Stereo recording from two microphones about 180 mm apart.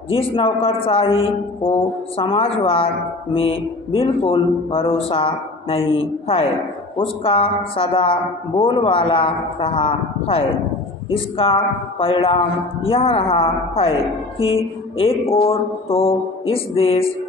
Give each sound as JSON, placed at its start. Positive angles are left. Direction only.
{"t": 0.1, "sound": "a man's voice", "side_deg": 30}